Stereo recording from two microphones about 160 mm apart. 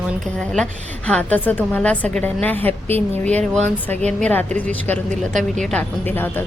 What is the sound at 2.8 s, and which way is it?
Speech, 40° right (ahead or behind).